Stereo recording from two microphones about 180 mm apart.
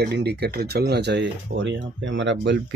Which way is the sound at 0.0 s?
65° right (ahead or behind).